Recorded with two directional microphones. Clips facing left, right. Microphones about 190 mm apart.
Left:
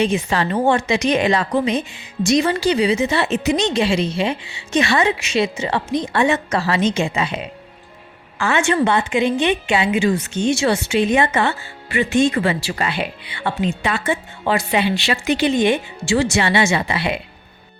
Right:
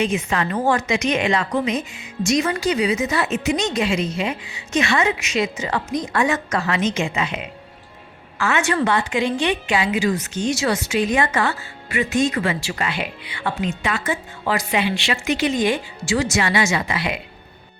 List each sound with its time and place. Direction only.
0.0 s a woman's voice: 30° left (ahead or behind)